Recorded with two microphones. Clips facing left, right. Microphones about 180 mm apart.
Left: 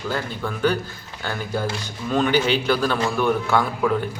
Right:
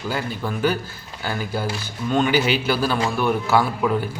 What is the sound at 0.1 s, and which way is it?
Speech, 5° right (ahead or behind).